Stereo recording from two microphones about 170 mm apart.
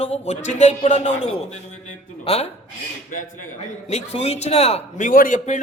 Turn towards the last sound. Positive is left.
turn(degrees=50)  # may be behind; listen again after turning